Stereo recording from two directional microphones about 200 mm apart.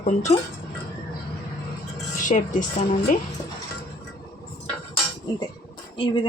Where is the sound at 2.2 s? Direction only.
40° left (ahead or behind).